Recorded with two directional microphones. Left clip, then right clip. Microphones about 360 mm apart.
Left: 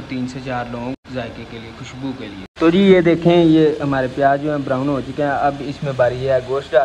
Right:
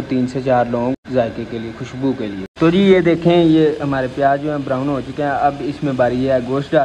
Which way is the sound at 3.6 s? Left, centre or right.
Centre.